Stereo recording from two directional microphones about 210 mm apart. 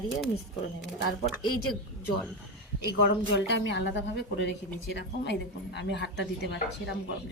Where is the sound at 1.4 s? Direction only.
90° left.